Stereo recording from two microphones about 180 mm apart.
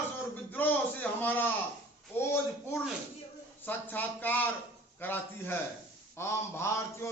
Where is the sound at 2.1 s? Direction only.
10° left (ahead or behind).